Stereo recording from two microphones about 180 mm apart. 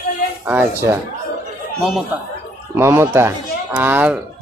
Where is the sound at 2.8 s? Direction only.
15° right (ahead or behind).